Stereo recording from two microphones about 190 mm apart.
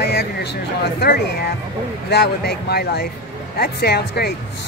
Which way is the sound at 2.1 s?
55° left (ahead or behind).